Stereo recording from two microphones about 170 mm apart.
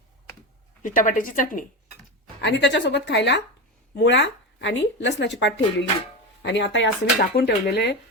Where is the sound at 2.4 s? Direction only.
90° left.